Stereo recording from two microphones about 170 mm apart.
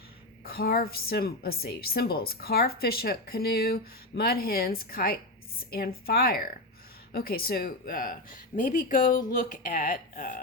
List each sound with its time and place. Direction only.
0.4 s a woman's voice: 60° left (ahead or behind)